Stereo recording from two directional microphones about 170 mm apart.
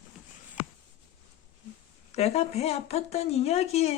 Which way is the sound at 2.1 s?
40° left (ahead or behind).